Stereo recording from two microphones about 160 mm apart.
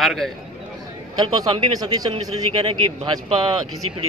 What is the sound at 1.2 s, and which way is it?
Speech, 25° right (ahead or behind).